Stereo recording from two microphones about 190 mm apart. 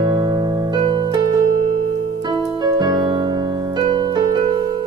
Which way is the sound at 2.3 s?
20° right (ahead or behind).